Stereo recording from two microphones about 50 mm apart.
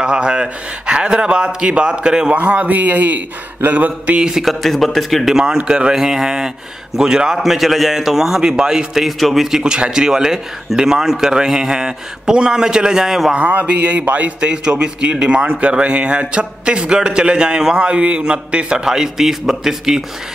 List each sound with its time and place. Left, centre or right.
0.0 s a man's voice: centre
2.3 s speech: right
4.2 s a man's voice: centre
4.5 s a man's voice: centre
5.3 s a man's voice: centre
9.0 s a man's voice: centre
13.3 s a man's voice: right; by 20.0 s centre